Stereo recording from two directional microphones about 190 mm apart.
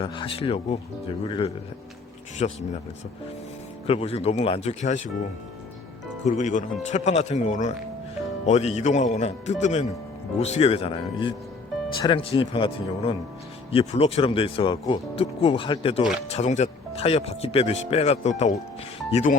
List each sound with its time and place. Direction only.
0.0 s speech: 25° left (ahead or behind)
3.8 s speech: 30° left (ahead or behind)
6.2 s speech: 40° left (ahead or behind)